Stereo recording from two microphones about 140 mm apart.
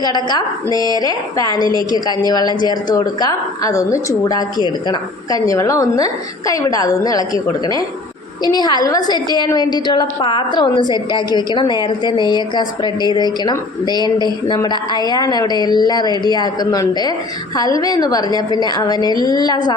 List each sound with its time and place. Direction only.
0.0 s a woman's voice: 30° left (ahead or behind)